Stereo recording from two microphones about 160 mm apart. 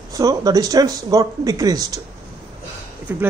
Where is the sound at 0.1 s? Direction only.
20° right (ahead or behind).